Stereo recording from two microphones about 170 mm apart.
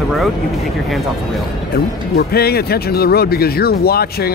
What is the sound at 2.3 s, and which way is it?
Speech, 65° left (ahead or behind).